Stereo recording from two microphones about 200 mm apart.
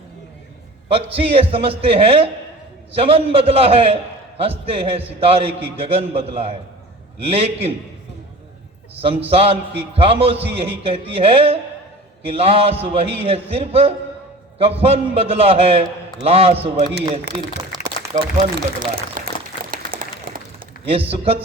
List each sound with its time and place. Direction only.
0.9 s a man's voice: 30° right (ahead or behind)
9.2 s a man's voice: 30° right (ahead or behind)
17.3 s speech: 55° right (ahead or behind)
18.1 s speech: 40° right (ahead or behind)
19.7 s applause: 45° right (ahead or behind)